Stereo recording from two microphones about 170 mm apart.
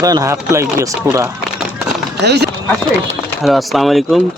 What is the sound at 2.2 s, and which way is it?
Speech, 80° right.